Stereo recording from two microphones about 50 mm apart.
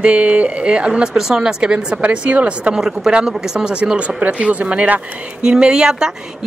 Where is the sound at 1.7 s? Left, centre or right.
Right.